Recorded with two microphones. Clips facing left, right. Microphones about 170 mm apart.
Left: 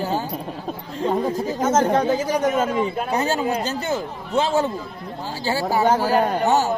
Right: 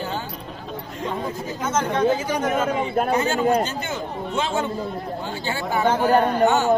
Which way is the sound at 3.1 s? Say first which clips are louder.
Right 3 dB; 35° left (ahead or behind).